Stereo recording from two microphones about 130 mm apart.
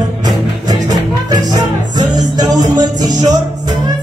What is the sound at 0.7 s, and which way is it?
Music, 30° right (ahead or behind).